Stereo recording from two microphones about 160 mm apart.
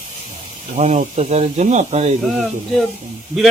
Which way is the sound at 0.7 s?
45° right (ahead or behind).